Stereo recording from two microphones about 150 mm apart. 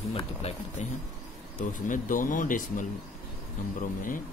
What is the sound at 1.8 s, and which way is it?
Speech, 60° left (ahead or behind).